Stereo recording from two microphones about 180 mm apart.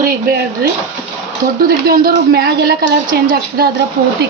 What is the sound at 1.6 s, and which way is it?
Speech, 55° right (ahead or behind).